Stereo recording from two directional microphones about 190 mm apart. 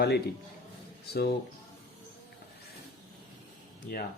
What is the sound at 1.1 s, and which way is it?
Speech, 55° left (ahead or behind).